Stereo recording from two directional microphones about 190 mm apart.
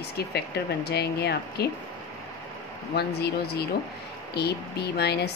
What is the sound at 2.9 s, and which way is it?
Speech, 60° left (ahead or behind).